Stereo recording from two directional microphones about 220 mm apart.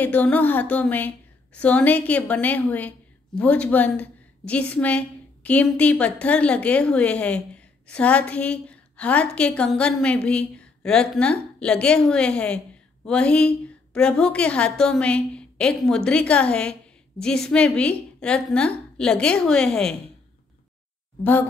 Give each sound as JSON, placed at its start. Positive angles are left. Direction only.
{"t": 0.0, "sound": "a woman's voice", "side_deg": 5}
{"t": 21.2, "sound": "a woman's voice", "side_deg": 10}